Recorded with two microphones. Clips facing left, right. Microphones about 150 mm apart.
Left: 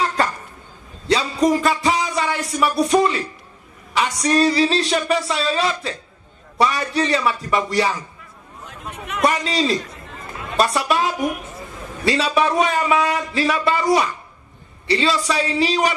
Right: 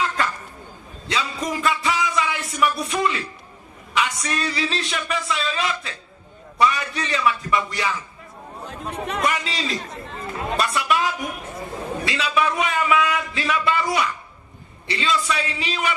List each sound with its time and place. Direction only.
0.2 s a sound: 35° left (ahead or behind)
3.9 s speech: 35° left (ahead or behind)
8.6 s speech: 30° right (ahead or behind)
9.2 s speech: 40° left (ahead or behind)
9.8 s chatter: 30° right (ahead or behind)
10.6 s speech: 35° left (ahead or behind)